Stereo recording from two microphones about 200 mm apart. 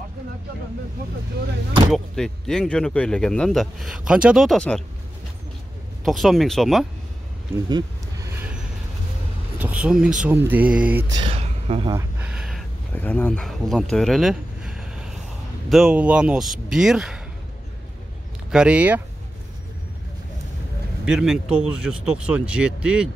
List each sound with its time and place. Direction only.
1.9 s speech: centre (ahead or behind)
6.0 s speech: centre (ahead or behind)
9.6 s a sound: 5° right (ahead or behind)
11.1 s speech: 30° right (ahead or behind)
11.9 s a sound: 10° right (ahead or behind)
15.7 s speech: 5° right (ahead or behind)
18.5 s speech: 5° right (ahead or behind)
21.0 s speech: 5° right (ahead or behind)